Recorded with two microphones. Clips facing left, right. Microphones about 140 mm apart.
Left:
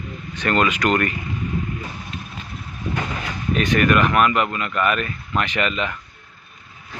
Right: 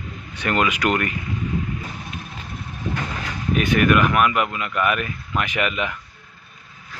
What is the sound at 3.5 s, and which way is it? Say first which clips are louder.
Speech: even; 10° right (ahead or behind).